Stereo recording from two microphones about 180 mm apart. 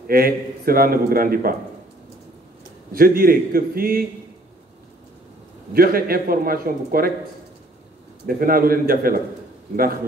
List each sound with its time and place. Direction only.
0.1 s a man's voice: 55° right (ahead or behind)
2.9 s a man's voice: 55° right (ahead or behind)
5.7 s a man's voice: 55° right (ahead or behind)
8.3 s a man's voice: 55° right (ahead or behind)